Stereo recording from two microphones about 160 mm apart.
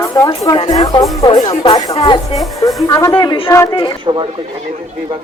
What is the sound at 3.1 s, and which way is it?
Speech, 35° left (ahead or behind).